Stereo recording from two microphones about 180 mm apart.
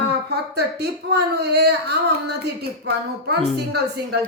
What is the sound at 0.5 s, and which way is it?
Speech, 65° right (ahead or behind).